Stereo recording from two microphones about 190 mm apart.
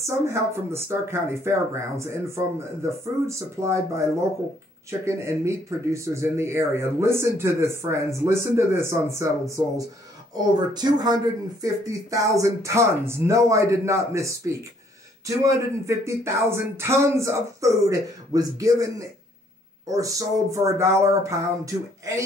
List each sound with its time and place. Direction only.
0.0 s speech: 15° right (ahead or behind)
5.0 s speech: 15° right (ahead or behind)
10.3 s speech: 20° right (ahead or behind)